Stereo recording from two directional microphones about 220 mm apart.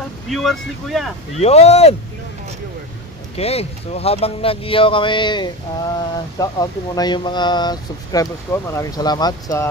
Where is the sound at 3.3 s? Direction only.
25° left (ahead or behind).